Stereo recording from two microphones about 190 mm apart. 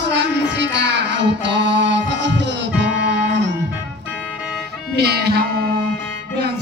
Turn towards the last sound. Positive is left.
turn(degrees=-55)  # may be behind; listen again after turning